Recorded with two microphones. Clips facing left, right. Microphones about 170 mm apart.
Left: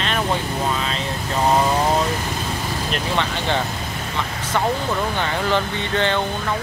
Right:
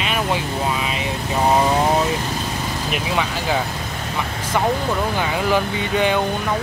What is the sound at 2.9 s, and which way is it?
Speech, 5° right (ahead or behind).